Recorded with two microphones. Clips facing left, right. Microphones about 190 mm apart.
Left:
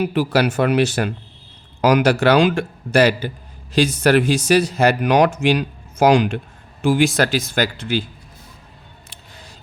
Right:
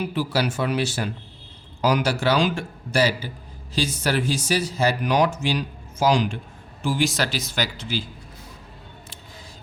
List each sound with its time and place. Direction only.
0.0 s a man's voice: 70° left (ahead or behind)